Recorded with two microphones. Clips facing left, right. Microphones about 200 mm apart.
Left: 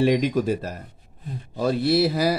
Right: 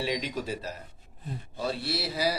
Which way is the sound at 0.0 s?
50° left (ahead or behind).